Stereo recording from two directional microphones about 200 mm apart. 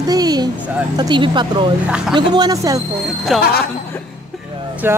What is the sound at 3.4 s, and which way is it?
Speech, 50° left (ahead or behind).